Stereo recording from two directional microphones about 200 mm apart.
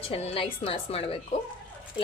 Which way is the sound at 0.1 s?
30° left (ahead or behind).